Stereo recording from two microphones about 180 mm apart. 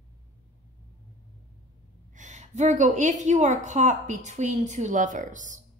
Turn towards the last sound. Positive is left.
turn(degrees=-45)  # may be behind; listen again after turning